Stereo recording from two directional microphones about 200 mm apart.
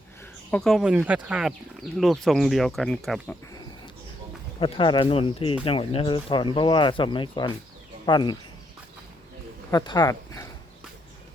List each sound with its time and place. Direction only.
0.5 s speech: centre (ahead or behind)
4.6 s speech: 25° left (ahead or behind)
9.7 s speech: 20° left (ahead or behind)